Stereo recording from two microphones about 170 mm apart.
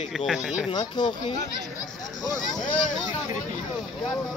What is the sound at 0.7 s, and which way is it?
Speech, 25° left (ahead or behind).